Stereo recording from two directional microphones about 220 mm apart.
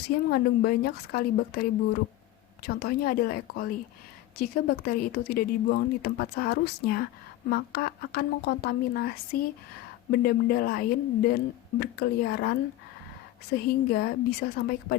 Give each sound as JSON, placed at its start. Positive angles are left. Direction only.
{"t": 0.3, "sound": "speech", "side_deg": 45}